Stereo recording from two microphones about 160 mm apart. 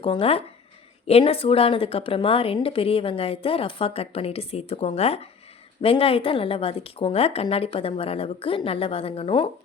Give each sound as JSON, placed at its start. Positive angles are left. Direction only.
{"t": 0.0, "sound": "a woman's voice", "side_deg": 35}